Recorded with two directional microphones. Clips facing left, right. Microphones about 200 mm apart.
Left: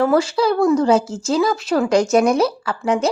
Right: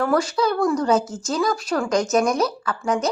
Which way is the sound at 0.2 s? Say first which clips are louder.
Left 4 dB; 30° left (ahead or behind).